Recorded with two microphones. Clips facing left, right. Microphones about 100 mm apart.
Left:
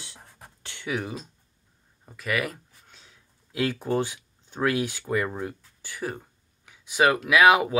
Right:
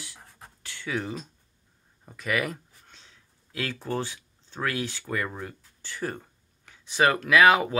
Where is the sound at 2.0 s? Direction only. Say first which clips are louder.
Even; centre (ahead or behind).